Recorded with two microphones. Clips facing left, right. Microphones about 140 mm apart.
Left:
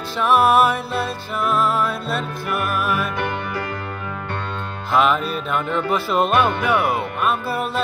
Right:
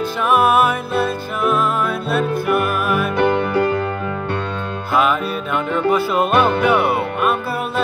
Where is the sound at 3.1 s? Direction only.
55° right (ahead or behind).